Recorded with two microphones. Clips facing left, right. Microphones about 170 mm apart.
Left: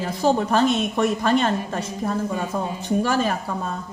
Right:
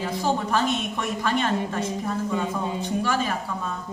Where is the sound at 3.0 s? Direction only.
45° left (ahead or behind).